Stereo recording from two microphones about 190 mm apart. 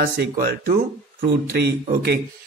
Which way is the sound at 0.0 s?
55° right (ahead or behind).